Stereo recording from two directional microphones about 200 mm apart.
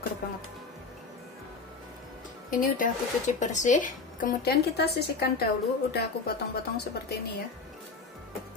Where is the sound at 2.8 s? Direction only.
35° left (ahead or behind).